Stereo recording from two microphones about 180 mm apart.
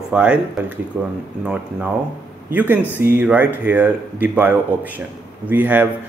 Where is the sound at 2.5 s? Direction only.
10° right (ahead or behind).